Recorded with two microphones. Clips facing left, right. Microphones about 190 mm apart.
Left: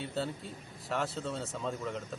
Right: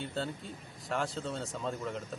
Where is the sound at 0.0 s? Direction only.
Centre (ahead or behind).